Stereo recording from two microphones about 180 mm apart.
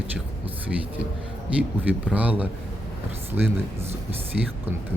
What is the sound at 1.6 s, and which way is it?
Speech, 10° right (ahead or behind).